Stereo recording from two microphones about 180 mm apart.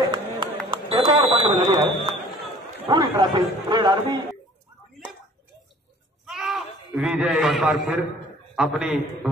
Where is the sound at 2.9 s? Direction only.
20° right (ahead or behind).